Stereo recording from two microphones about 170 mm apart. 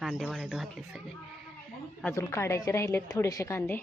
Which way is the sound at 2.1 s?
15° left (ahead or behind).